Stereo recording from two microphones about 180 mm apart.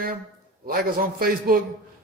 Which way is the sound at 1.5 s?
55° right (ahead or behind).